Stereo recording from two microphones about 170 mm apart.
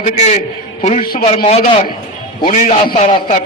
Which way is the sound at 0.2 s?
40° left (ahead or behind).